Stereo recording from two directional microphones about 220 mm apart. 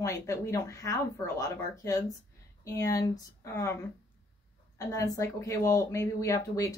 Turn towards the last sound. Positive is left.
turn(degrees=15)  # may be behind; listen again after turning